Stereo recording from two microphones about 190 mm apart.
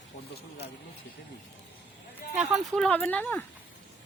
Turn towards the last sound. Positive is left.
turn(degrees=10)  # may be behind; listen again after turning